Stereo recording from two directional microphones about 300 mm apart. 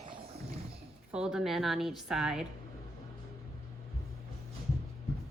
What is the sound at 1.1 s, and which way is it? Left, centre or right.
Speech, centre.